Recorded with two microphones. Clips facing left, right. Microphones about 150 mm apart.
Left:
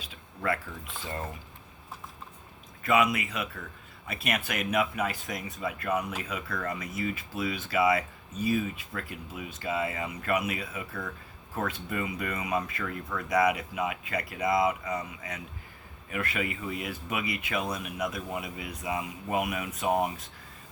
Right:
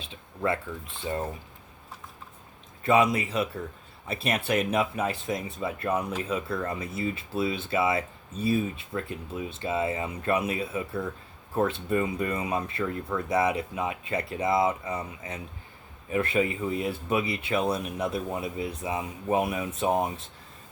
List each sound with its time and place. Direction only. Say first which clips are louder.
0.0 s mechanisms: right 4 dB; 25° right (ahead or behind)
2.8 s speech: right 3 dB; 30° right (ahead or behind)